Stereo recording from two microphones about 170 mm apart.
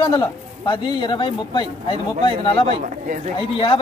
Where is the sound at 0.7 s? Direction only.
30° left (ahead or behind).